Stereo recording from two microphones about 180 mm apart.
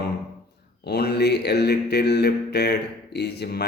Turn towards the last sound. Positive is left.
turn(degrees=65)  # may be behind; listen again after turning